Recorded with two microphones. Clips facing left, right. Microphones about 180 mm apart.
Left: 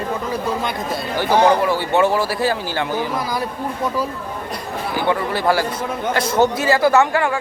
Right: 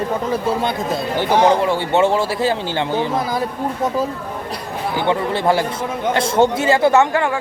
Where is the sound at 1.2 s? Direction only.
25° right (ahead or behind).